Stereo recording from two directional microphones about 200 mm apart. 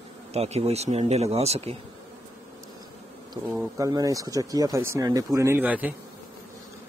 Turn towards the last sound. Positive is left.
turn(degrees=-10)  # may be behind; listen again after turning